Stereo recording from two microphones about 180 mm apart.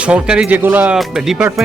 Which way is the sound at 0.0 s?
5° right (ahead or behind).